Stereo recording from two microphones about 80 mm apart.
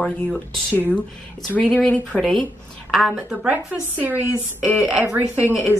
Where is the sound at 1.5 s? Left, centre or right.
Centre.